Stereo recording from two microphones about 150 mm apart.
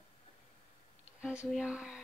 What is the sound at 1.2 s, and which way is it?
Speech, 5° right (ahead or behind).